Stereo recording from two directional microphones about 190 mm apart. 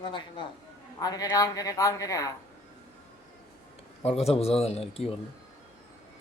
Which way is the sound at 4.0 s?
35° left (ahead or behind).